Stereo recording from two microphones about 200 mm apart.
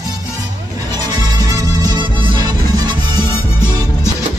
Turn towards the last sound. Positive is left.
turn(degrees=-20)  # may be behind; listen again after turning